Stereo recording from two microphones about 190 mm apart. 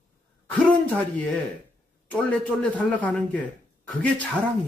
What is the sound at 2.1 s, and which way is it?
A man's voice, 5° left (ahead or behind).